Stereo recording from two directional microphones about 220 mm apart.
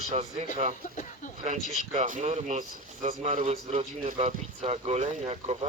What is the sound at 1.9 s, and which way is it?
A man's voice, 35° right (ahead or behind).